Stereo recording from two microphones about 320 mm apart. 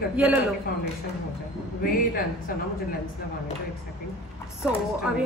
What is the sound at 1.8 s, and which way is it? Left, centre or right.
Speech, left.